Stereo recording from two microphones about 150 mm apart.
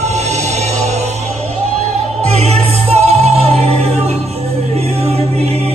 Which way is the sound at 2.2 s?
45° right (ahead or behind).